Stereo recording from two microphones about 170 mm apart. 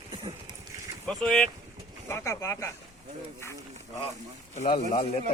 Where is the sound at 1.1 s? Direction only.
5° left (ahead or behind).